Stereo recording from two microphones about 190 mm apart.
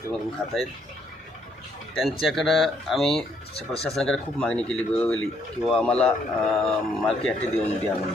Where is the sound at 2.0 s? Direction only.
Centre (ahead or behind).